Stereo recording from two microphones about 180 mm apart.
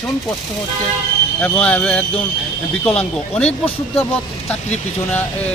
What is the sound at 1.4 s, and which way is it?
Speech, 5° left (ahead or behind).